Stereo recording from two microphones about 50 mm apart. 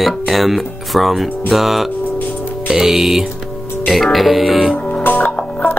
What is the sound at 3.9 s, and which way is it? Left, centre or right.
Speech, centre.